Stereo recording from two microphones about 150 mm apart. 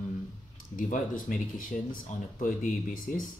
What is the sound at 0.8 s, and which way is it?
Speech, 65° left (ahead or behind).